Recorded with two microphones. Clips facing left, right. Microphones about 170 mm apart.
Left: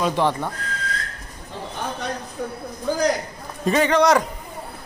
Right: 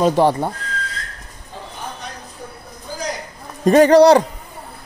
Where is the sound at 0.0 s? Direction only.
40° right (ahead or behind).